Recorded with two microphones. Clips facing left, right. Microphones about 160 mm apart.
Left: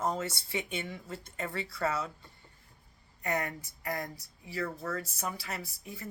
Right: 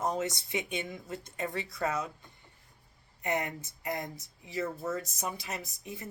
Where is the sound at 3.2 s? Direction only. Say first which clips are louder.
Right 1 dB; 20° right (ahead or behind).